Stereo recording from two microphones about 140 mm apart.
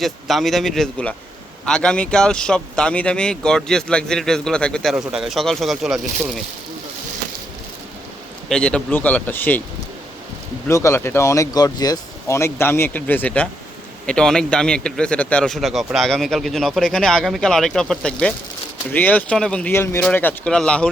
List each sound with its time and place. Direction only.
0.0 s speech: centre (ahead or behind)
8.4 s speech: 5° left (ahead or behind)
10.7 s speech: 20° left (ahead or behind)